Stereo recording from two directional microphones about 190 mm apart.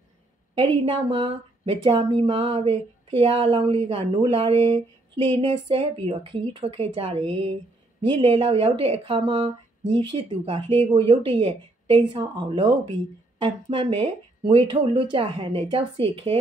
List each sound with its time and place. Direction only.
0.6 s speech: 25° right (ahead or behind)